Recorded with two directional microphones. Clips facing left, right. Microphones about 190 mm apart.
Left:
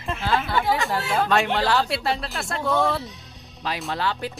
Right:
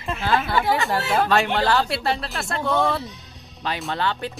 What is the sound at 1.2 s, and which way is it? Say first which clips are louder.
Speech: right 1 dB; centre (ahead or behind).